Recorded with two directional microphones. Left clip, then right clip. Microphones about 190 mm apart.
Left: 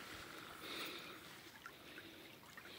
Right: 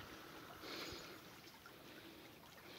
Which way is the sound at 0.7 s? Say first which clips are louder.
Left 2 dB; 5° right (ahead or behind).